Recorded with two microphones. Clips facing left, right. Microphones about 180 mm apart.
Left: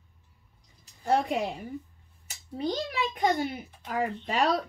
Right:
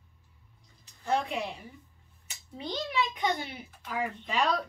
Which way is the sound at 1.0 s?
40° left (ahead or behind).